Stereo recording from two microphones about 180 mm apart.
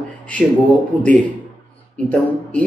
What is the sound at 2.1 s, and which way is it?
Speech, 5° left (ahead or behind).